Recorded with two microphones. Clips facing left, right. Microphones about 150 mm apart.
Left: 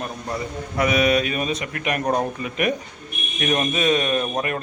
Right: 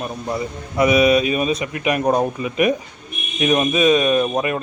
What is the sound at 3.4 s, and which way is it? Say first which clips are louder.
Speech: right 5 dB; 15° right (ahead or behind).